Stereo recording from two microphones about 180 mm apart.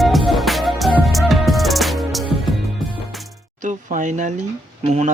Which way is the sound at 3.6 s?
45° right (ahead or behind).